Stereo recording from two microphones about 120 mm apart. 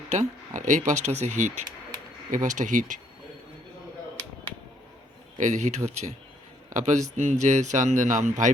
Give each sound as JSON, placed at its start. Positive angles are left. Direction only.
{"t": 0.1, "sound": "speech", "side_deg": -85}
{"t": 5.4, "sound": "speech", "side_deg": -90}
{"t": 6.7, "sound": "speech", "side_deg": -90}
{"t": 7.2, "sound": "speech", "side_deg": -80}